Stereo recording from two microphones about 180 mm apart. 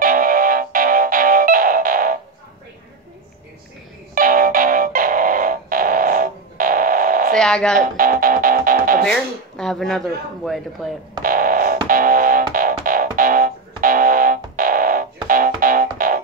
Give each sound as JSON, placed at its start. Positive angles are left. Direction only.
{"t": 0.0, "sound": "music", "side_deg": -50}
{"t": 4.1, "sound": "music", "side_deg": -50}
{"t": 7.3, "sound": "speech", "side_deg": 5}
{"t": 7.8, "sound": "music", "side_deg": -50}
{"t": 9.0, "sound": "speech", "side_deg": 5}
{"t": 11.2, "sound": "music", "side_deg": -50}